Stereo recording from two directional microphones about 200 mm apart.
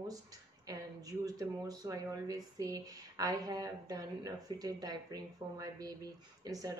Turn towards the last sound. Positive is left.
turn(degrees=-15)  # may be behind; listen again after turning